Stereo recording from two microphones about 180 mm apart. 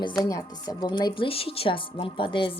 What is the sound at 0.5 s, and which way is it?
Speech, 20° left (ahead or behind).